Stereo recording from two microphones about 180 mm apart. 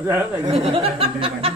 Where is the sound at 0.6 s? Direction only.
35° right (ahead or behind).